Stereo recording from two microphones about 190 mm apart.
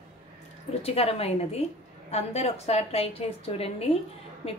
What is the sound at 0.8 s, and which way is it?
A woman's voice, 30° left (ahead or behind).